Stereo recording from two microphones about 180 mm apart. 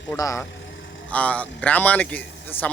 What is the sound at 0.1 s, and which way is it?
Speech, 15° left (ahead or behind).